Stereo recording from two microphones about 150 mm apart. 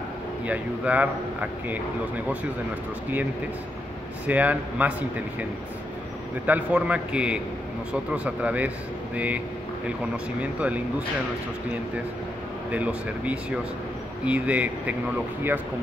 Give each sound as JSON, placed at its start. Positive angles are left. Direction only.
{"t": 0.5, "sound": "speech", "side_deg": -10}
{"t": 4.3, "sound": "speech", "side_deg": -10}
{"t": 6.4, "sound": "speech", "side_deg": -10}
{"t": 10.4, "sound": "speech", "side_deg": -10}
{"t": 12.7, "sound": "speech", "side_deg": -10}